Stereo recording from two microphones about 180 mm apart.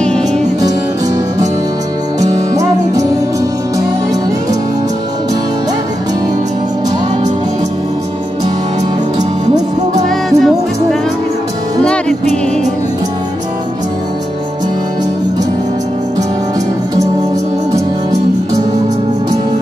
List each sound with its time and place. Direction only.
2.1 s music: 20° right (ahead or behind)
10.0 s music: centre (ahead or behind)